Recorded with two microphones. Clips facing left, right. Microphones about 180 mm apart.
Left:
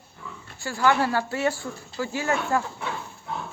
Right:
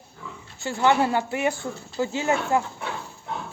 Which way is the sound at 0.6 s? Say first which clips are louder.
Right 2 dB; 20° right (ahead or behind).